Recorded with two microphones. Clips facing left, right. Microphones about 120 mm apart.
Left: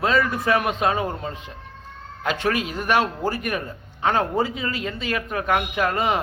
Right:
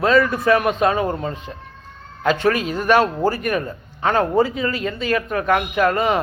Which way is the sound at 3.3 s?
15° left (ahead or behind).